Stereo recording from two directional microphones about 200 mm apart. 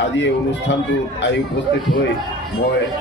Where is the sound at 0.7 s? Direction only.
60° left (ahead or behind).